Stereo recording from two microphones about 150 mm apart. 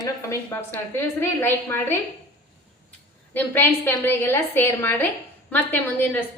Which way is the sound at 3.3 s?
15° left (ahead or behind).